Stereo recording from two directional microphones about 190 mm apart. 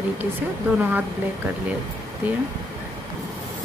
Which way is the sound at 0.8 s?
10° right (ahead or behind).